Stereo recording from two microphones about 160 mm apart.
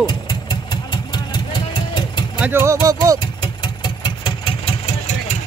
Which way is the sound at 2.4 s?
15° right (ahead or behind).